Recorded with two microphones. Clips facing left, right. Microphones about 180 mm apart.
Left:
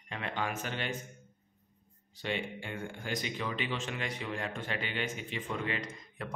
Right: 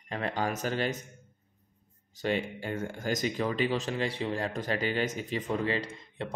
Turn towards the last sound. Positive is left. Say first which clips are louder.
# right 4 dB
turn(degrees=-30)  # may be behind; listen again after turning